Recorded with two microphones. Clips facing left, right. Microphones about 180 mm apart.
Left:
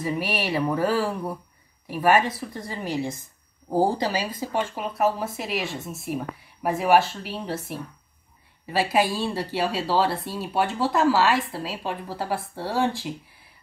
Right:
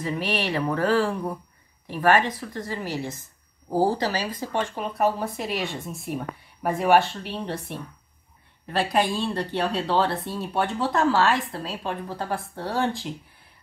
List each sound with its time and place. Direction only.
0.0 s speech: 10° left (ahead or behind)